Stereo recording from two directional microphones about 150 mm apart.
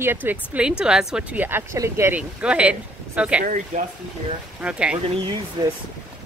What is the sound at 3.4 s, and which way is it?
Speech, 60° right (ahead or behind).